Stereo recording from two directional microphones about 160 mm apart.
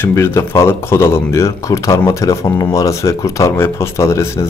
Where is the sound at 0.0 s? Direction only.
15° left (ahead or behind).